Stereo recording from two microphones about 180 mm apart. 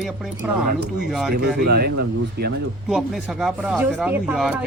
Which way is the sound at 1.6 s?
60° right (ahead or behind).